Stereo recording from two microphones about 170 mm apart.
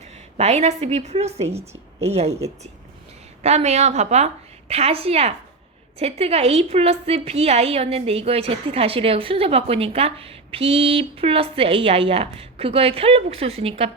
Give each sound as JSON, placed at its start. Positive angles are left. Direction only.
{"t": 0.0, "sound": "a woman's voice", "side_deg": -40}